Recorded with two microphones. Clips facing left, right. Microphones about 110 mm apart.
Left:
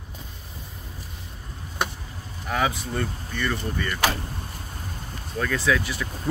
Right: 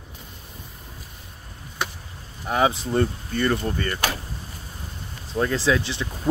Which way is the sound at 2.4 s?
25° right (ahead or behind).